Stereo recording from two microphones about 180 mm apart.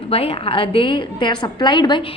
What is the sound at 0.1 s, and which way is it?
A woman's voice, 30° left (ahead or behind).